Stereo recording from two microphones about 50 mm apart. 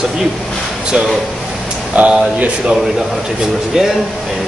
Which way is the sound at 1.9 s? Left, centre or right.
Right.